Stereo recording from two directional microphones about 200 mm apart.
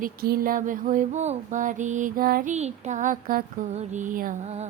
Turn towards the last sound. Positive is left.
turn(degrees=-35)  # may be behind; listen again after turning